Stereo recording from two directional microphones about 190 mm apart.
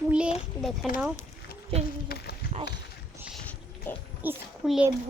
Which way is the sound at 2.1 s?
55° left (ahead or behind).